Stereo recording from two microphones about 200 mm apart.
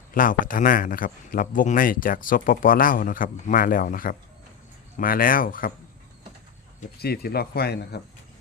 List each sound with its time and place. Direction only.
0.1 s speech: 45° left (ahead or behind)
7.0 s speech: 50° left (ahead or behind)